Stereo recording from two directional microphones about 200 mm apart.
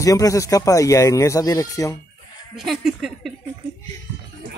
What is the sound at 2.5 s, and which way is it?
Speech, centre (ahead or behind).